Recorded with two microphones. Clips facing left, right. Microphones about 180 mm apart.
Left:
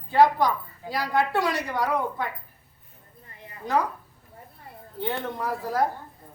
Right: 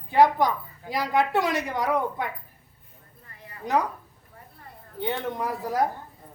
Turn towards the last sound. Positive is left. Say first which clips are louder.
# even
turn(degrees=-15)  # may be behind; listen again after turning